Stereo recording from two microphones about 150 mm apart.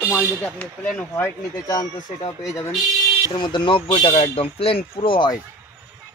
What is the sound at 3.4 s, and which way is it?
Speech, 30° left (ahead or behind).